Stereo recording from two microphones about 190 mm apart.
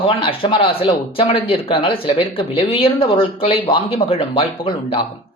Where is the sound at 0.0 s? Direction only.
25° left (ahead or behind).